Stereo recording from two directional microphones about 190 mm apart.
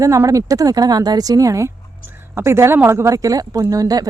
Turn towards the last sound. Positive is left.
turn(degrees=-20)  # may be behind; listen again after turning